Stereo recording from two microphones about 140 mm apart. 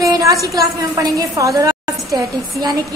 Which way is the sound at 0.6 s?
25° right (ahead or behind).